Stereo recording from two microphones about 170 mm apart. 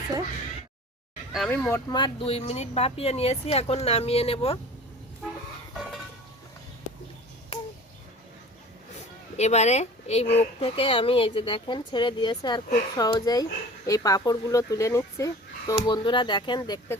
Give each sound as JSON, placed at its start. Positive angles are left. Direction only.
{"t": 1.5, "sound": "speech", "side_deg": 10}
{"t": 9.4, "sound": "speech", "side_deg": 40}